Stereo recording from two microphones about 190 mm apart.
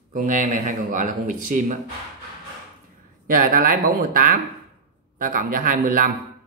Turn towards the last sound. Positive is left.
turn(degrees=-45)  # may be behind; listen again after turning